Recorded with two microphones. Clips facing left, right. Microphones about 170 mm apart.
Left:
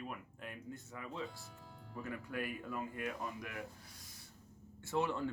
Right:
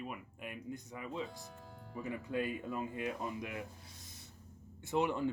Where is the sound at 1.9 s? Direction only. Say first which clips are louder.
Right 5 dB; 20° right (ahead or behind).